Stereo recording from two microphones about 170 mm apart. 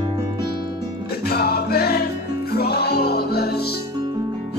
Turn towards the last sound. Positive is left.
turn(degrees=70)  # may be behind; listen again after turning